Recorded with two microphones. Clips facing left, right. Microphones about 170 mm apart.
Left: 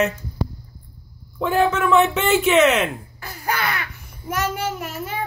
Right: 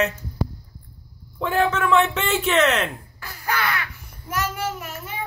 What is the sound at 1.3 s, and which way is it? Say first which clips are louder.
Speech: left 2 dB; 5° left (ahead or behind).